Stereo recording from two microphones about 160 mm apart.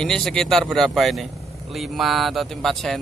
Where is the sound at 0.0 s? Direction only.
5° left (ahead or behind).